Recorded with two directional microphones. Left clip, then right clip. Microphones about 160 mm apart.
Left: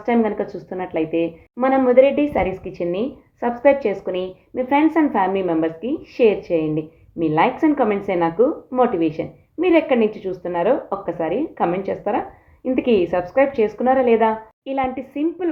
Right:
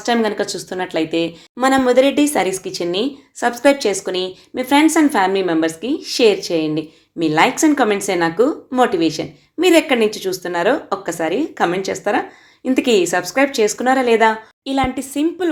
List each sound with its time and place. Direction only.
0.0 s a woman's voice: 35° right (ahead or behind)